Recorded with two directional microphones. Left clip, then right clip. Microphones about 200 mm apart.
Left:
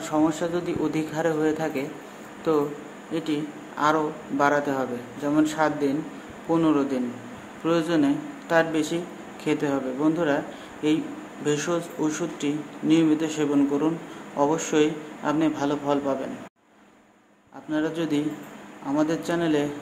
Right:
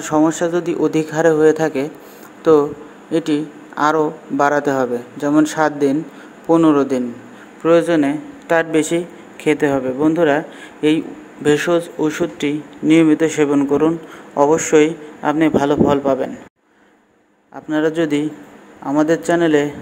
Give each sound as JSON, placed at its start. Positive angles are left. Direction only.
{"t": 0.0, "sound": "a man's voice", "side_deg": -35}
{"t": 17.6, "sound": "a man's voice", "side_deg": -35}